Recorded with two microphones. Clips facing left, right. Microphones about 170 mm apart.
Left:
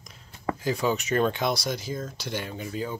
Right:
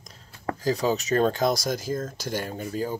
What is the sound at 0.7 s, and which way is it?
Speech, 35° right (ahead or behind).